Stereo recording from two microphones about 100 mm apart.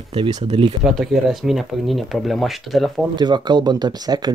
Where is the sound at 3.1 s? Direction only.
50° right (ahead or behind).